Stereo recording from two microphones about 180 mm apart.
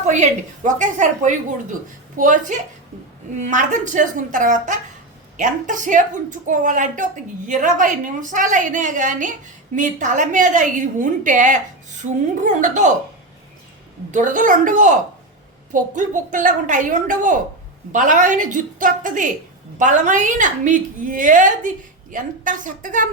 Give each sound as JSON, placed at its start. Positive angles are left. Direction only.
{"t": 0.0, "sound": "a woman's voice", "side_deg": -40}
{"t": 14.1, "sound": "a woman's voice", "side_deg": -45}